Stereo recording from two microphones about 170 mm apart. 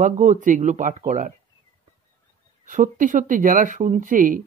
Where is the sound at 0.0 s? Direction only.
45° right (ahead or behind).